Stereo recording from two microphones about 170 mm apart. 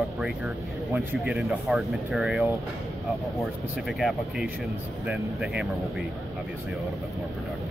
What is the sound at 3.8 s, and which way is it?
Speech, centre (ahead or behind).